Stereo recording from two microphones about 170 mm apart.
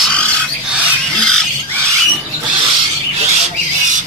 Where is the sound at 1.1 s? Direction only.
5° left (ahead or behind).